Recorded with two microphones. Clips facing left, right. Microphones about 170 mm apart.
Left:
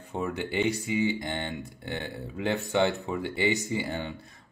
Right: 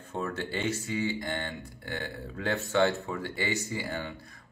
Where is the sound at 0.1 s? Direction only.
15° left (ahead or behind).